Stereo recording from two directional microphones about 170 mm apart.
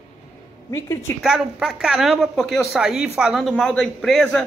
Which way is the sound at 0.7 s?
20° left (ahead or behind).